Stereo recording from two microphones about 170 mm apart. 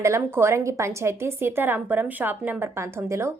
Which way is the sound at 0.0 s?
15° right (ahead or behind).